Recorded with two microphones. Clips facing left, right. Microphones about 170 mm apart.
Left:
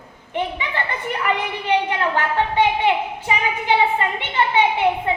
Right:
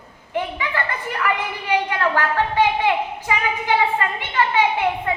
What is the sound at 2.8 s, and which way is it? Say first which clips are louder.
A woman's voice: left 1 dB; 20° left (ahead or behind).